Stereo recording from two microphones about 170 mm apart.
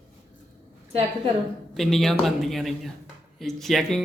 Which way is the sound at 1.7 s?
Centre (ahead or behind).